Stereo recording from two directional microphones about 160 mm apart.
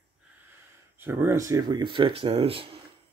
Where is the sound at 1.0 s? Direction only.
15° right (ahead or behind); by 2.7 s 35° right (ahead or behind).